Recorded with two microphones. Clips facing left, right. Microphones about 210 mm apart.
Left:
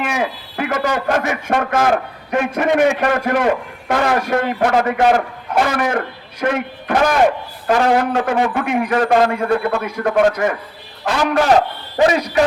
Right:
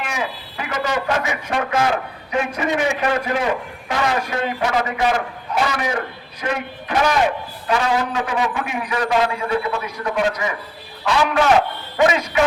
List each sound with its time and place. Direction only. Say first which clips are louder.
0.0 s a man's voice: left 5 dB; 55° left (ahead or behind)
11.0 s a man's voice: left 1 dB; 40° left (ahead or behind)